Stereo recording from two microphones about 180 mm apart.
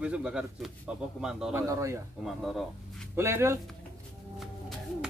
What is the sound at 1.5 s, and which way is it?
Speech, 15° right (ahead or behind).